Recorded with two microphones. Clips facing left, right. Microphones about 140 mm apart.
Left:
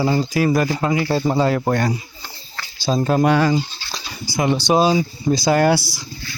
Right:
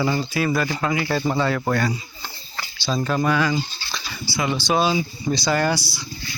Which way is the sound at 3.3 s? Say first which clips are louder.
Left 4 dB; 35° left (ahead or behind).